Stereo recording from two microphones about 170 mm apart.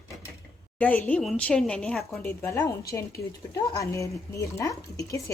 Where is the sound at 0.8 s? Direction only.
10° left (ahead or behind).